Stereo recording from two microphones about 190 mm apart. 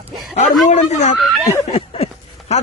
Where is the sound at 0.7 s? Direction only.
35° left (ahead or behind).